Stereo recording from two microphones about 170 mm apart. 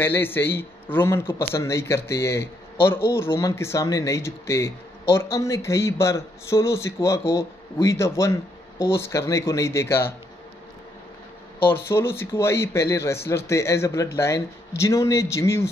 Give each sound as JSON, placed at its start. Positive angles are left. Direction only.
{"t": 0.0, "sound": "speech", "side_deg": 10}
{"t": 11.6, "sound": "speech", "side_deg": 15}